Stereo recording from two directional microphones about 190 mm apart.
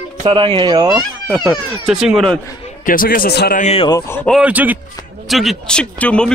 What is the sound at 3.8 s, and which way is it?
Speech, 15° left (ahead or behind).